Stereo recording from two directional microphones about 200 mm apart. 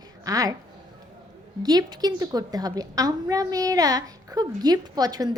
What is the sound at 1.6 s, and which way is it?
A woman's voice, 20° right (ahead or behind).